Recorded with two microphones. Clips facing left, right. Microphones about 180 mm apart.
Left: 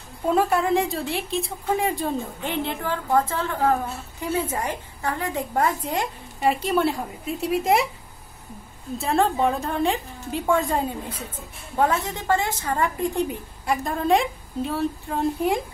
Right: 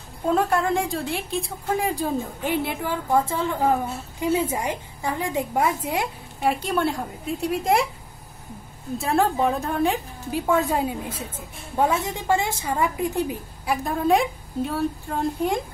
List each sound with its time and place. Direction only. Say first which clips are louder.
0.3 s a woman's voice: left 1 dB; 5° left (ahead or behind)
8.9 s a woman's voice: even; centre (ahead or behind)